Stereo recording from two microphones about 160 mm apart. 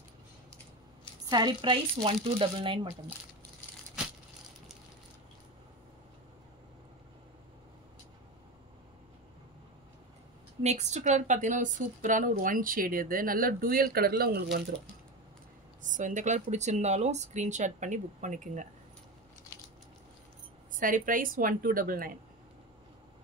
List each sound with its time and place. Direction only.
1.2 s a woman's voice: 25° right (ahead or behind)
10.6 s a woman's voice: 45° right (ahead or behind); by 14.6 s 75° right (ahead or behind)
15.8 s speech: 50° right (ahead or behind)
20.7 s a woman's voice: 55° right (ahead or behind)